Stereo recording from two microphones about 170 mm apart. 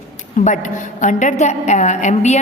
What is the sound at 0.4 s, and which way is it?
A man's voice, 50° left (ahead or behind).